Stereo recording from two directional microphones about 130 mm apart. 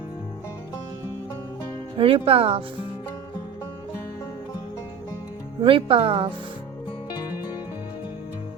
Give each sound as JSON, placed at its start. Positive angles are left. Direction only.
{"t": 2.0, "sound": "speech", "side_deg": -45}
{"t": 5.6, "sound": "speech", "side_deg": -45}